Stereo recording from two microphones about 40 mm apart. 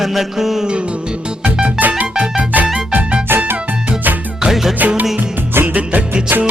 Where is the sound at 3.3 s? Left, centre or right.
Right.